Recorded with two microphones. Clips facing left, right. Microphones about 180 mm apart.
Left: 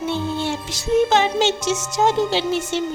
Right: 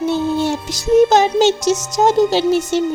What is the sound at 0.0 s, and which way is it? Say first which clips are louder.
Speech: right 6 dB; 40° right (ahead or behind).